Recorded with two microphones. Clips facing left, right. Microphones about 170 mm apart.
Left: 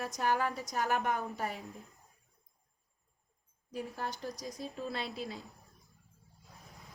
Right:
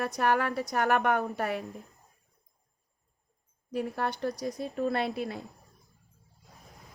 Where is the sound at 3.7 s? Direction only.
65° right (ahead or behind).